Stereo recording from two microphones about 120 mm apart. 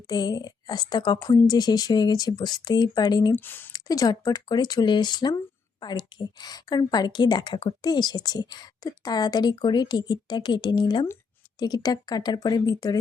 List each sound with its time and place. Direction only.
0.1 s a woman's voice: 35° left (ahead or behind)
3.3 s speech: 15° left (ahead or behind)
3.7 s a woman's voice: 30° left (ahead or behind)